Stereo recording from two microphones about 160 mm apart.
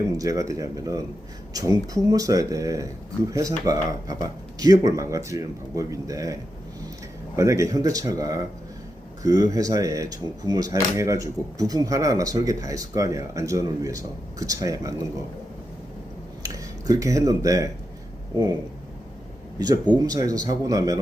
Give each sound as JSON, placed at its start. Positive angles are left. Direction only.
{"t": 0.1, "sound": "speech", "side_deg": -20}
{"t": 16.4, "sound": "speech", "side_deg": -20}
{"t": 19.5, "sound": "speech", "side_deg": -25}